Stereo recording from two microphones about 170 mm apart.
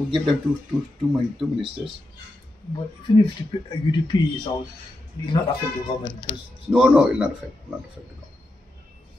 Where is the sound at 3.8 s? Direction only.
25° left (ahead or behind).